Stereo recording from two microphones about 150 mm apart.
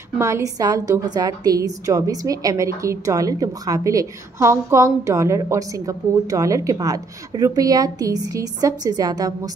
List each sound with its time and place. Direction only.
0.2 s a woman's voice: 20° right (ahead or behind)